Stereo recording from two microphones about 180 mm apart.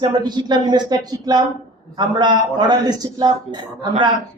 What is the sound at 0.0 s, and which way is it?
A man's voice, 25° right (ahead or behind).